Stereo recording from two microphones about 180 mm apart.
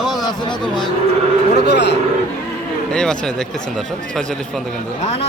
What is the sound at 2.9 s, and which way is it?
Speech, 5° left (ahead or behind).